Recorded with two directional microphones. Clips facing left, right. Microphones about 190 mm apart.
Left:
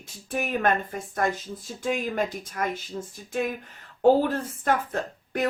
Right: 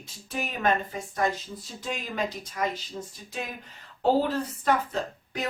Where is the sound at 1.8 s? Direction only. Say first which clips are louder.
Left 5 dB; 50° left (ahead or behind).